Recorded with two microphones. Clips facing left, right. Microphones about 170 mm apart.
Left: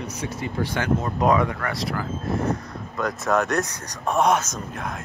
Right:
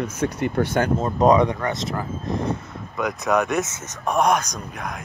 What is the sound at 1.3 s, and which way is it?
Speech, 20° right (ahead or behind).